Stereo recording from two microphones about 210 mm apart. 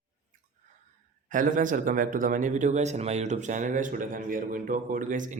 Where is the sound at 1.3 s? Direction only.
40° right (ahead or behind).